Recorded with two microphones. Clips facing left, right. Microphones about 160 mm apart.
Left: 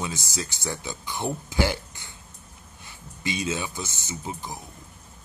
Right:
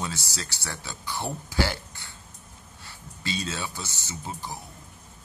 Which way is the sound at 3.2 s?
15° left (ahead or behind).